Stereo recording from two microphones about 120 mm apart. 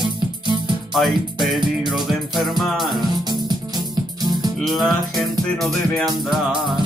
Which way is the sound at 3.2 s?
35° right (ahead or behind).